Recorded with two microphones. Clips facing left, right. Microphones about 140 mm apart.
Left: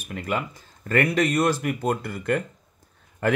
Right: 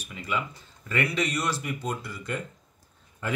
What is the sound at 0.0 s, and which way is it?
Speech, 55° left (ahead or behind).